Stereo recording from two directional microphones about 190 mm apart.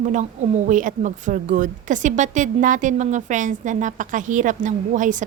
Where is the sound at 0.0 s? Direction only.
40° right (ahead or behind).